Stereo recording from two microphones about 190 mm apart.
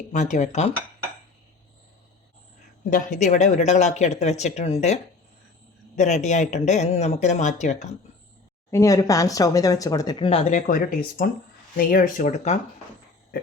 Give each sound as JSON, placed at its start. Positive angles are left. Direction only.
{"t": 0.1, "sound": "speech", "side_deg": 40}
{"t": 2.9, "sound": "speech", "side_deg": 40}
{"t": 6.0, "sound": "speech", "side_deg": 40}
{"t": 8.7, "sound": "speech", "side_deg": 15}